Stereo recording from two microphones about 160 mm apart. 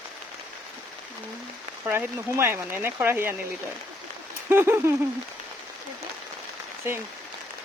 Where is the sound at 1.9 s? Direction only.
10° right (ahead or behind).